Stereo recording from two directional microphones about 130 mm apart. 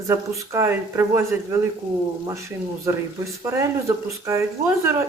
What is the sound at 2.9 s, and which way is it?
Speech, 20° right (ahead or behind).